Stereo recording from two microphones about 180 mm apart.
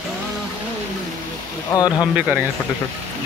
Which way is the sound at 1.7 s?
20° left (ahead or behind).